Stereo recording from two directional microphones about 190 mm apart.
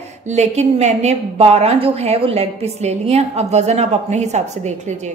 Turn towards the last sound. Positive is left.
turn(degrees=-35)  # may be behind; listen again after turning